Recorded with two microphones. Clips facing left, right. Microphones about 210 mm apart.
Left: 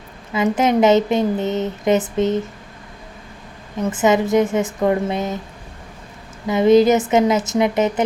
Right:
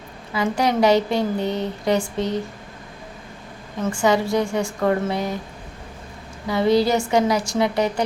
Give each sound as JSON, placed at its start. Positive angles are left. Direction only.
{"t": 0.3, "sound": "speech", "side_deg": 20}
{"t": 3.8, "sound": "speech", "side_deg": 20}
{"t": 6.5, "sound": "speech", "side_deg": 20}